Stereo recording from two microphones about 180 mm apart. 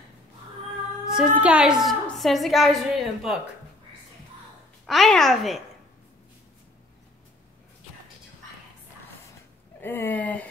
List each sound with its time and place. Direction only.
1.0 s a woman's voice: 5° right (ahead or behind)
4.8 s a woman's voice: centre (ahead or behind)
9.8 s speech: 10° left (ahead or behind)